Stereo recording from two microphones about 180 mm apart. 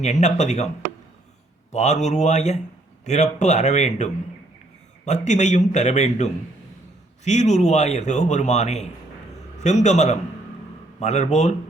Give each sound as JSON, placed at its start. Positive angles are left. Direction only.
{"t": 0.0, "sound": "speech", "side_deg": 40}
{"t": 1.7, "sound": "speech", "side_deg": 40}